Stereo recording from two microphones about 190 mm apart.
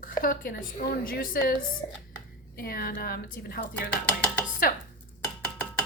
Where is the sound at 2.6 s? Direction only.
50° left (ahead or behind).